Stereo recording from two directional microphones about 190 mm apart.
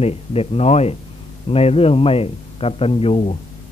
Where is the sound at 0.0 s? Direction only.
30° left (ahead or behind).